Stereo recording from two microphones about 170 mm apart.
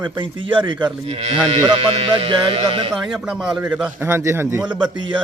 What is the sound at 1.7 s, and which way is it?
Music, 35° right (ahead or behind).